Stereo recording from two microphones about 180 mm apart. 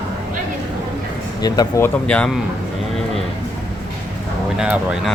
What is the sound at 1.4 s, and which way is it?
Speech, 20° left (ahead or behind).